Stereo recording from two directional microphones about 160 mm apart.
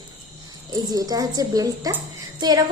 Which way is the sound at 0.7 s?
25° right (ahead or behind).